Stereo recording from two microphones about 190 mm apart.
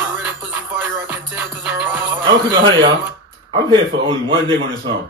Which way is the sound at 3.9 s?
65° right (ahead or behind).